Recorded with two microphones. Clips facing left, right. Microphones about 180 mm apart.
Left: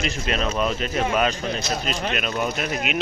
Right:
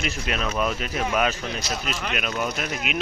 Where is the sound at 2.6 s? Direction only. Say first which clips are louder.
Left 3 dB; centre (ahead or behind).